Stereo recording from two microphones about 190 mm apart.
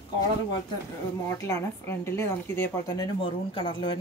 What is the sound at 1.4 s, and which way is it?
Speech, 15° left (ahead or behind).